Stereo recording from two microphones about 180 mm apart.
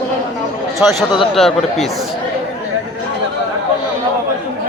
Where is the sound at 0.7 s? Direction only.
Centre (ahead or behind).